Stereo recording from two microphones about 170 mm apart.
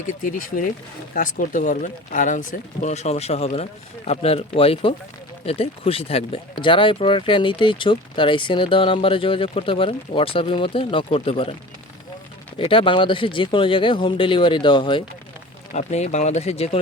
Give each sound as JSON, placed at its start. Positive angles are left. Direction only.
{"t": 0.1, "sound": "speech", "side_deg": 55}
{"t": 12.5, "sound": "speech", "side_deg": 30}
{"t": 15.7, "sound": "speech", "side_deg": 45}